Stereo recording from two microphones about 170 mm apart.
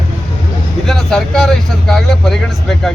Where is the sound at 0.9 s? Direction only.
5° left (ahead or behind).